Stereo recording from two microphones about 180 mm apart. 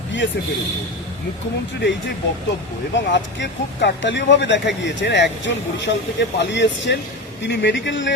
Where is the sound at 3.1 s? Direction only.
80° left.